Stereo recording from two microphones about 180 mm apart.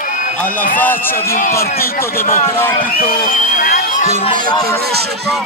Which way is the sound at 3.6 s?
50° left (ahead or behind).